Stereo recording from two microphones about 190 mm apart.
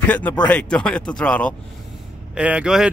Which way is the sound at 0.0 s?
10° left (ahead or behind).